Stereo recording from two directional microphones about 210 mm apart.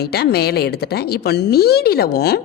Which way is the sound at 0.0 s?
50° left (ahead or behind).